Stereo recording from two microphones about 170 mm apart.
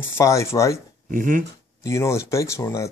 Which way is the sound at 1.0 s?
50° right (ahead or behind).